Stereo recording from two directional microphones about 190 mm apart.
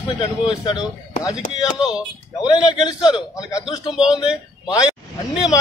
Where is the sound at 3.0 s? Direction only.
20° left (ahead or behind).